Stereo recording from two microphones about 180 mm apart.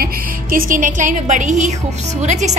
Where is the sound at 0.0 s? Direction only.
55° right (ahead or behind).